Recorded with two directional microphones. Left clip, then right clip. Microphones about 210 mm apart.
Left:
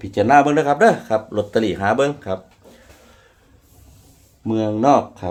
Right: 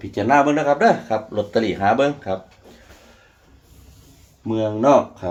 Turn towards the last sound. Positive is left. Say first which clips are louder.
# even
turn(degrees=50)  # may be behind; listen again after turning